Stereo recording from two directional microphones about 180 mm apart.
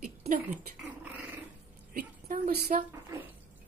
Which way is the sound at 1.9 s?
50° right (ahead or behind).